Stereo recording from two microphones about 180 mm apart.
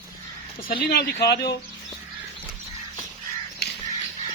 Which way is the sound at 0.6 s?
60° left (ahead or behind).